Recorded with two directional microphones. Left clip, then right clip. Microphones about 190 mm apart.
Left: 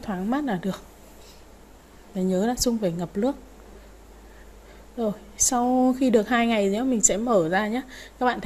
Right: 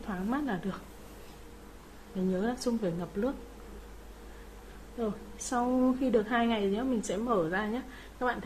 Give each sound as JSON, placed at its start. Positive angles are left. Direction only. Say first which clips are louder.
{"t": 0.0, "sound": "a woman's voice", "louder": "left 7 dB", "side_deg": 25}
{"t": 2.3, "sound": "a woman's voice", "louder": "left 9 dB", "side_deg": 25}
{"t": 5.0, "sound": "a woman's voice", "louder": "left 11 dB", "side_deg": 25}